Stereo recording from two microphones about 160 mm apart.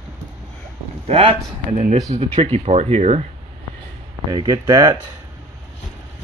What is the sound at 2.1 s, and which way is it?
Speech, 50° right (ahead or behind).